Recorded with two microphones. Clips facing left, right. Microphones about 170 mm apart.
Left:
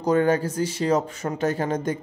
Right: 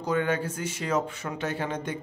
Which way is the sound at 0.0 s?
40° left (ahead or behind).